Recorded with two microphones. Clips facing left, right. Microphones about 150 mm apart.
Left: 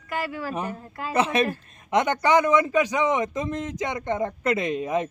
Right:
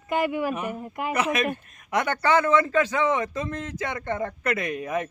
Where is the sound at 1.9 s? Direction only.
20° left (ahead or behind).